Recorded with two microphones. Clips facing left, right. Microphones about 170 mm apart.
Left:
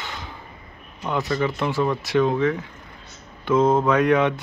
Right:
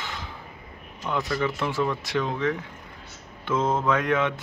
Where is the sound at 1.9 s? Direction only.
50° left (ahead or behind).